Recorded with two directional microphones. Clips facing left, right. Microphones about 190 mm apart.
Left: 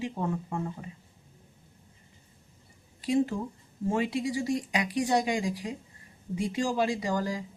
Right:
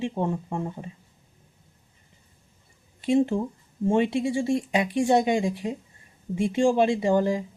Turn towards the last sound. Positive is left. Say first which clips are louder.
# right 8 dB
turn(degrees=-25)  # may be behind; listen again after turning